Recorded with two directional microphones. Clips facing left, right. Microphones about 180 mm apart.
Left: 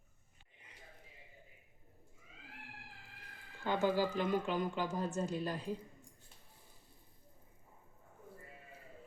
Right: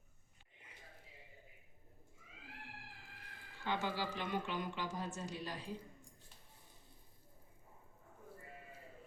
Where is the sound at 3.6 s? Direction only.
45° left (ahead or behind).